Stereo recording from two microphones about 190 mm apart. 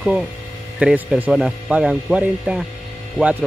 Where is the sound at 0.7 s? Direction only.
5° right (ahead or behind).